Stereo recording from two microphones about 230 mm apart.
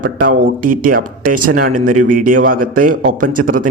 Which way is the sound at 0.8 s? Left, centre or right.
Right.